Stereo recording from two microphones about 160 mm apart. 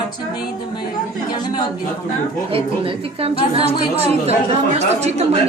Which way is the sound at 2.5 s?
35° right (ahead or behind).